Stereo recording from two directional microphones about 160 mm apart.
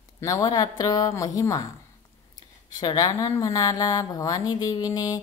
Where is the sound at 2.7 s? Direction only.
25° left (ahead or behind).